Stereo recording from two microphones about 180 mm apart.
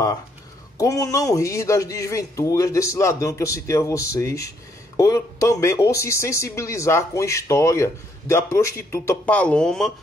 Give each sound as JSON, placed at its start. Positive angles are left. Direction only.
{"t": 0.7, "sound": "speech", "side_deg": 20}